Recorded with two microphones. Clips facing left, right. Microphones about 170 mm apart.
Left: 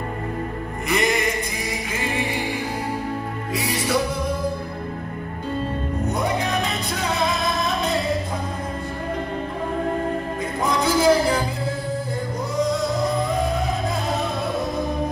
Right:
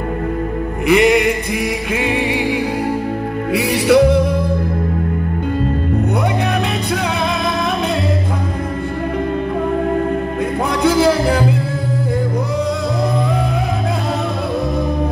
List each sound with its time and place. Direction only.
0.8 s music: 65° right (ahead or behind)
10.6 s music: 65° right (ahead or behind)